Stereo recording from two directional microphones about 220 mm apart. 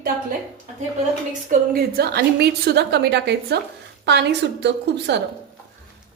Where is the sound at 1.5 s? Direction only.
45° right (ahead or behind).